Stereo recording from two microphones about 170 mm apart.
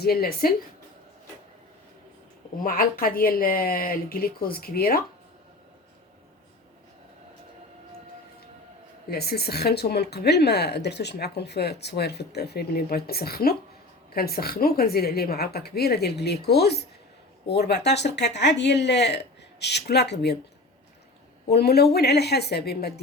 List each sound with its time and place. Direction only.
0.0 s speech: 65° left (ahead or behind)
2.6 s speech: 60° left (ahead or behind)
9.0 s speech: 70° left (ahead or behind)
21.5 s speech: 70° left (ahead or behind)